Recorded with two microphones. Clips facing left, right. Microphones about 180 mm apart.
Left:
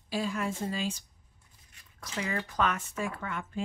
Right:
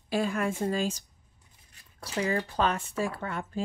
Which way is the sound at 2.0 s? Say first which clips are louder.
Right 5 dB; 35° right (ahead or behind).